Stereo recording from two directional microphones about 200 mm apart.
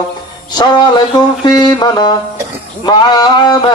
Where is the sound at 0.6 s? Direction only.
20° left (ahead or behind).